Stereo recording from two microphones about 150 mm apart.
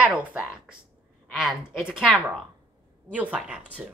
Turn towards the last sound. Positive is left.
turn(degrees=-5)  # may be behind; listen again after turning